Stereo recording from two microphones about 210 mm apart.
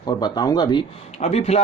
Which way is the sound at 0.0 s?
20° left (ahead or behind).